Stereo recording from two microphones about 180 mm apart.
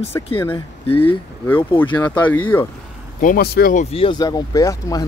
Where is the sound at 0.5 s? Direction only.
30° left (ahead or behind).